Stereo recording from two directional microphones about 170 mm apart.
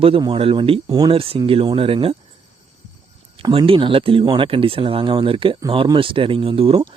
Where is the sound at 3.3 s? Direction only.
30° right (ahead or behind).